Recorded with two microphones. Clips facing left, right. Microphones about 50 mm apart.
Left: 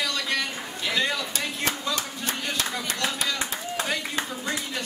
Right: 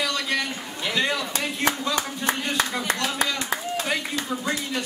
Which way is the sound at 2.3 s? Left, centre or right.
Right.